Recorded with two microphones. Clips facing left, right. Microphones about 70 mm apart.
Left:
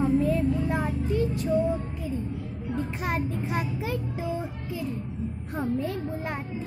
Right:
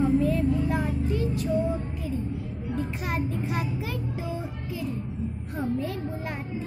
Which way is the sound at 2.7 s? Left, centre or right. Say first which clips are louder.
Left 1 dB; left.